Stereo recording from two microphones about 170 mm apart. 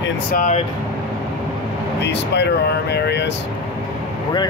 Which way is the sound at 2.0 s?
90° left.